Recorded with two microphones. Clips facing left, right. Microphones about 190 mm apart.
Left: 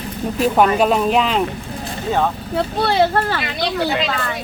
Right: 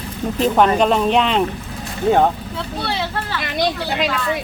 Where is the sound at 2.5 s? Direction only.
50° left (ahead or behind).